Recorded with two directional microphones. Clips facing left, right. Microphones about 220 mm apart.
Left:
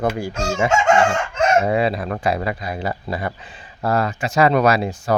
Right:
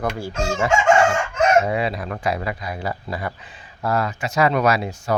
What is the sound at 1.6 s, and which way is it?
Speech, 35° left (ahead or behind).